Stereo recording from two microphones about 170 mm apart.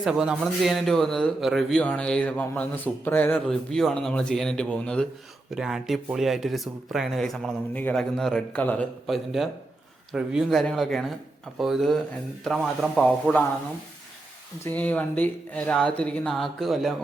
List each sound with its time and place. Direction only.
0.0 s a man's voice: 5° right (ahead or behind)
14.6 s a man's voice: 10° left (ahead or behind)